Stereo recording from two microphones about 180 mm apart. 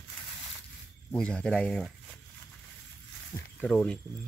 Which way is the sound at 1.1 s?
5° left (ahead or behind).